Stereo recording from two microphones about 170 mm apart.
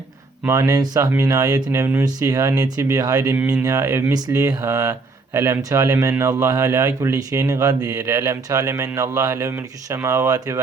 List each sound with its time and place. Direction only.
0.4 s speech: 15° right (ahead or behind)